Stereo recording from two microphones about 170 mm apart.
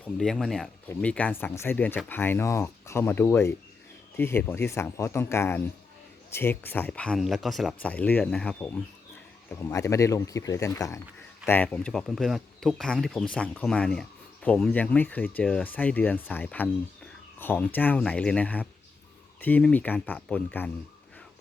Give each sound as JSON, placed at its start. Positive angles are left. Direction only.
{"t": 0.0, "sound": "speech", "side_deg": 5}